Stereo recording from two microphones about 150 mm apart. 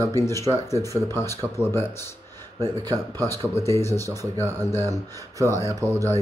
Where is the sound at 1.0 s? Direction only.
20° left (ahead or behind).